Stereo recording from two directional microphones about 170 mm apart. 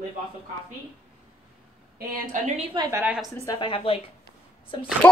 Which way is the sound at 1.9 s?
55° right (ahead or behind).